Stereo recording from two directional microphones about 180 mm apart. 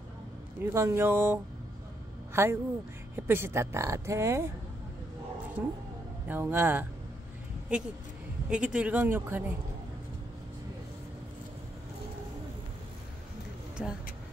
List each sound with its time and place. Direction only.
0.6 s speech: 15° right (ahead or behind)
5.6 s speech: 10° right (ahead or behind)
8.5 s speech: 5° right (ahead or behind)
13.8 s speech: 5° right (ahead or behind)